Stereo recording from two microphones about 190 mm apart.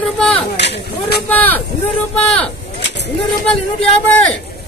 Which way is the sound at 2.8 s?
65° left (ahead or behind).